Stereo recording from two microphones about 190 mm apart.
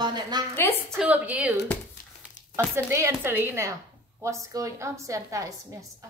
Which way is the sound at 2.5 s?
15° right (ahead or behind).